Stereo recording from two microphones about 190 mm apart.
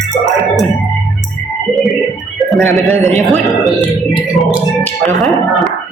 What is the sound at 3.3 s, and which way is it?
Speech, centre (ahead or behind).